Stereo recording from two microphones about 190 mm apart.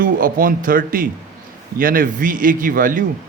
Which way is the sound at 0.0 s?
45° right (ahead or behind).